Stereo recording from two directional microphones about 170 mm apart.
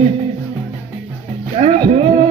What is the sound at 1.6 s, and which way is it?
Music, 40° right (ahead or behind).